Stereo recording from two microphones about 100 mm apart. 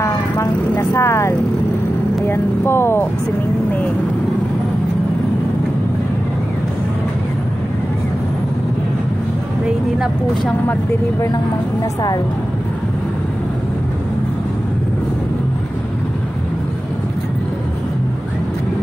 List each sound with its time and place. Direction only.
0.0 s vehicle: 30° left (ahead or behind)
2.2 s speech: 25° left (ahead or behind)